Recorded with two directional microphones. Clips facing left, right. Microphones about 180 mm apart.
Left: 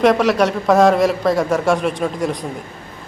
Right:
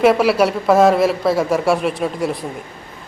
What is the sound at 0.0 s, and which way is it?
Speech, 5° right (ahead or behind).